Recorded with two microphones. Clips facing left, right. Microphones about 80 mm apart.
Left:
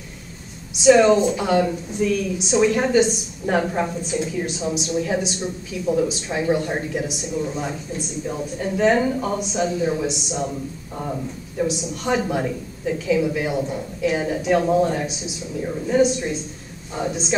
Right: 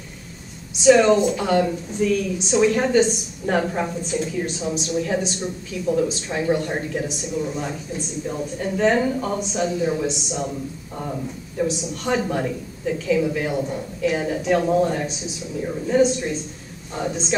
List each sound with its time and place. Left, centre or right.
0.8 s a woman's voice: centre
8.3 s a woman's voice: centre